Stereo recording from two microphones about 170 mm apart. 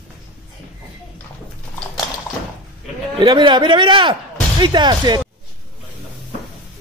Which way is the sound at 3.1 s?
25° right (ahead or behind).